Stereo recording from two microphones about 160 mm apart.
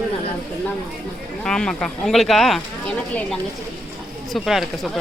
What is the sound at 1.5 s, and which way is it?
Speech, 5° left (ahead or behind).